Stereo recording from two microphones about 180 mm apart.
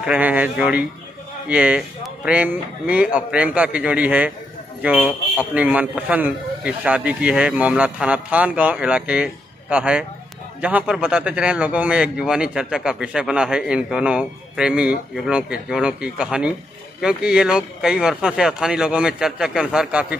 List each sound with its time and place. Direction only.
0.0 s a man's voice: 5° right (ahead or behind)